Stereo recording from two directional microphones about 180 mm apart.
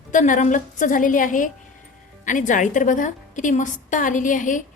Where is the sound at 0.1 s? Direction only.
45° left (ahead or behind).